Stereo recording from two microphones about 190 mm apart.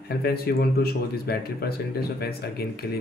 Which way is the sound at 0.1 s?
55° left (ahead or behind).